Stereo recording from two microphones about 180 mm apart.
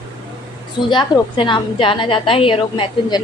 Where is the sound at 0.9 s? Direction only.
25° left (ahead or behind).